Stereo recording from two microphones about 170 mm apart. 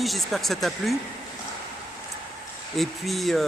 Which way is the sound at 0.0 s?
Centre (ahead or behind).